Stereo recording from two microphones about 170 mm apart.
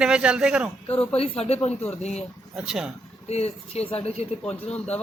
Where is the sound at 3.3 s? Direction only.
35° left (ahead or behind).